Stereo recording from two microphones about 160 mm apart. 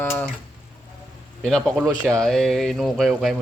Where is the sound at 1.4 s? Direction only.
5° left (ahead or behind).